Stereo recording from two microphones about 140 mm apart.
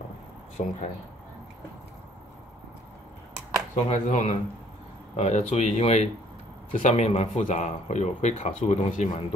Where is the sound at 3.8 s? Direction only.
60° left (ahead or behind).